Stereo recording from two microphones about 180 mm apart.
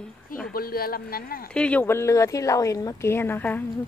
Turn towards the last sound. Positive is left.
turn(degrees=10)  # may be behind; listen again after turning